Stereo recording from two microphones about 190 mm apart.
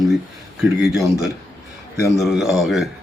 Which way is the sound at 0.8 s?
Centre (ahead or behind).